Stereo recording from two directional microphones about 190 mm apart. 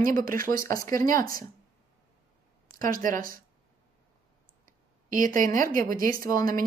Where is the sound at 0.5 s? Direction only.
15° left (ahead or behind).